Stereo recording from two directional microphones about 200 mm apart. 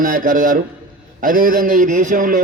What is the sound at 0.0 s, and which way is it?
A man's voice, 45° right (ahead or behind).